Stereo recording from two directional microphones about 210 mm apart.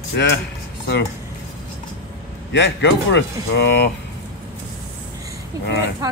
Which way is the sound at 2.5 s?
60° left (ahead or behind).